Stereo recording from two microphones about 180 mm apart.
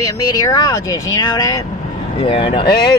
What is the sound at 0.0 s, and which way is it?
Speech, 20° left (ahead or behind).